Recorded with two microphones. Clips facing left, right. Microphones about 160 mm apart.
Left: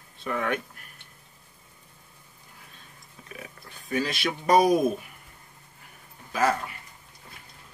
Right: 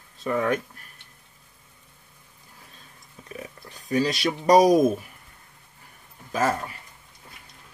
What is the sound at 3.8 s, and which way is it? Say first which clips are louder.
Speech: right 4 dB; 35° right (ahead or behind).